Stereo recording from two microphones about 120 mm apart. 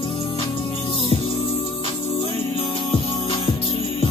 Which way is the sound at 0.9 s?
55° left (ahead or behind).